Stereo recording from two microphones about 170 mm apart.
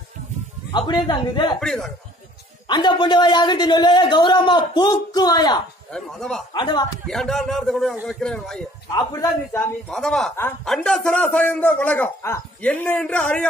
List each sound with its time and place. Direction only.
0.7 s a man's voice: 25° left (ahead or behind)
1.6 s a man's voice: centre (ahead or behind)
2.7 s a man's voice: 25° left (ahead or behind)
5.9 s a man's voice: 5° left (ahead or behind)
6.5 s a man's voice: 25° left (ahead or behind)
7.1 s a man's voice: centre (ahead or behind)
8.2 s a man's voice: 5° left (ahead or behind)
8.9 s a man's voice: 20° left (ahead or behind)
9.8 s a man's voice: 5° left (ahead or behind)
10.3 s a man's voice: 15° left (ahead or behind)